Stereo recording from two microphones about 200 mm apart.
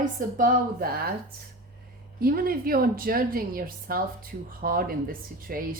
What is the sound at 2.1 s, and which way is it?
A woman's voice, 50° right (ahead or behind).